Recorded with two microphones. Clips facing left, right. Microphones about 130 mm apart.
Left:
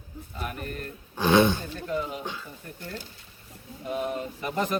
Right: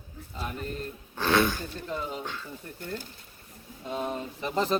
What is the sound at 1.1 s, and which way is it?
Speech, 15° left (ahead or behind).